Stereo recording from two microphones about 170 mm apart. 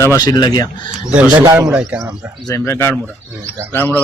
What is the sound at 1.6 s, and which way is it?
Speech, 5° right (ahead or behind).